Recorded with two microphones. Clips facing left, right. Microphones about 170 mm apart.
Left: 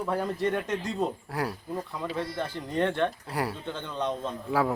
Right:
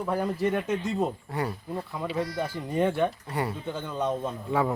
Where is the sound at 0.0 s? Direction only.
5° right (ahead or behind).